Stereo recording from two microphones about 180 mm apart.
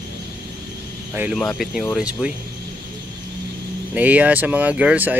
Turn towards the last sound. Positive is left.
turn(degrees=-10)  # may be behind; listen again after turning